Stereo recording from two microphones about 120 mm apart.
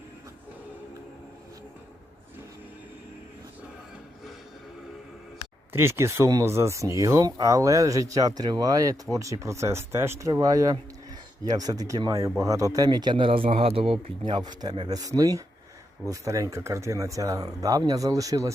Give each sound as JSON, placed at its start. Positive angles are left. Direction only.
{"t": 5.7, "sound": "speech", "side_deg": -20}
{"t": 14.3, "sound": "speech", "side_deg": -35}